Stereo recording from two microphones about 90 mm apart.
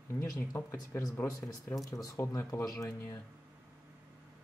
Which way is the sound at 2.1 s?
30° left (ahead or behind).